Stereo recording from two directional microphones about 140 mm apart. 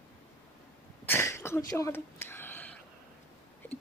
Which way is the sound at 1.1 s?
20° left (ahead or behind).